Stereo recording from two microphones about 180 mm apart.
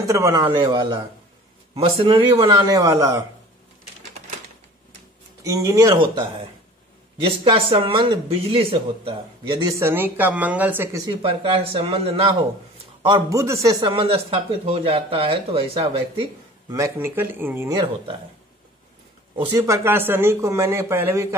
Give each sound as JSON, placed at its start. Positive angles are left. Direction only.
{"t": 0.0, "sound": "speech", "side_deg": -20}
{"t": 5.4, "sound": "a man's voice", "side_deg": -15}
{"t": 7.2, "sound": "speech", "side_deg": -30}
{"t": 9.7, "sound": "a man's voice", "side_deg": -15}
{"t": 11.1, "sound": "speech", "side_deg": -30}
{"t": 13.0, "sound": "speech", "side_deg": -20}
{"t": 16.7, "sound": "a man's voice", "side_deg": -15}
{"t": 19.3, "sound": "speech", "side_deg": -30}
{"t": 19.6, "sound": "a man's voice", "side_deg": -15}